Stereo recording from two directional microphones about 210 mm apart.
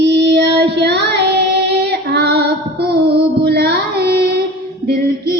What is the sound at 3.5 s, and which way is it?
Carnatic music, 50° right (ahead or behind).